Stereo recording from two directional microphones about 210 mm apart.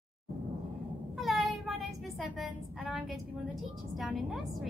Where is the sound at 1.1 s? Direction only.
Centre (ahead or behind).